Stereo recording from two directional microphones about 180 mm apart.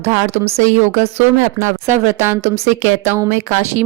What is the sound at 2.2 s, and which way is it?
Speech, 15° right (ahead or behind).